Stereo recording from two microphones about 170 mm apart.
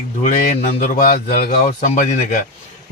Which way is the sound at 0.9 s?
60° left (ahead or behind).